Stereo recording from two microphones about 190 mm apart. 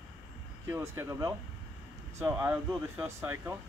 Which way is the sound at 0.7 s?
15° right (ahead or behind).